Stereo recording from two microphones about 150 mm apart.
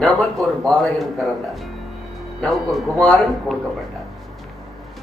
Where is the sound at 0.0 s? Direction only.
5° left (ahead or behind).